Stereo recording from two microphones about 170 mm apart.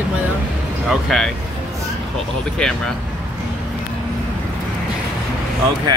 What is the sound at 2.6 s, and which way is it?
Speech, 5° left (ahead or behind).